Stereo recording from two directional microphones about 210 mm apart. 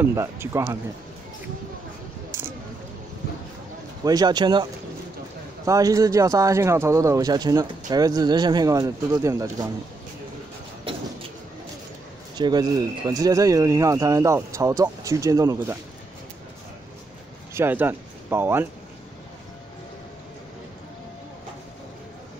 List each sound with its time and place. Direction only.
0.0 s speech: 15° right (ahead or behind)
2.3 s a sound: 10° right (ahead or behind)
4.0 s speech: 20° right (ahead or behind)
5.7 s speech: 15° right (ahead or behind)
10.9 s vehicle: 25° right (ahead or behind)
12.4 s speech: 20° right (ahead or behind)
17.6 s speech: 10° right (ahead or behind)